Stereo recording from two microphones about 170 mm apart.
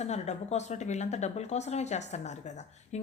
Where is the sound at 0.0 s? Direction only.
40° left (ahead or behind).